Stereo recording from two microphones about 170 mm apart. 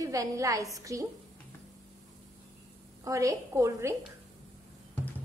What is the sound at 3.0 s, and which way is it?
Speech, 20° right (ahead or behind).